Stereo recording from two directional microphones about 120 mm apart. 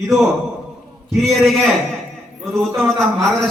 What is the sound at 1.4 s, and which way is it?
Speech, centre (ahead or behind).